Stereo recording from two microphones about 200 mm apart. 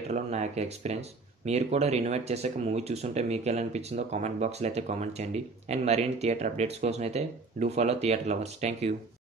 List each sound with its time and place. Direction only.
0.1 s speech: 35° right (ahead or behind)